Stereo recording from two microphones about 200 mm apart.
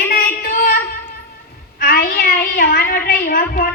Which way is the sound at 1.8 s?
45° left (ahead or behind).